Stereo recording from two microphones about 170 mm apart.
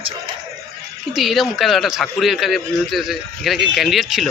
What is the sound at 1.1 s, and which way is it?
A man's voice, centre (ahead or behind).